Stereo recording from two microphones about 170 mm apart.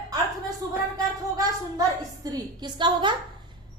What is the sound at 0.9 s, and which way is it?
A woman's voice, 20° right (ahead or behind).